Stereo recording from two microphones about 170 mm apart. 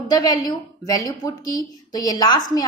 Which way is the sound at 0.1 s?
20° left (ahead or behind).